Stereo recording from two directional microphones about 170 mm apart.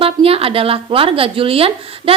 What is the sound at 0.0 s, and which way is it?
A woman's voice, 35° right (ahead or behind).